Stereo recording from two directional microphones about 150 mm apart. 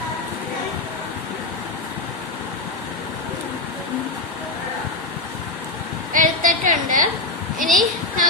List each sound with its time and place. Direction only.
6.1 s a woman's voice: 60° right (ahead or behind)